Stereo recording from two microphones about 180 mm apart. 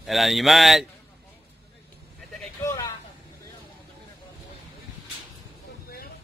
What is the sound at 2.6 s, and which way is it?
Vehicle, 20° left (ahead or behind).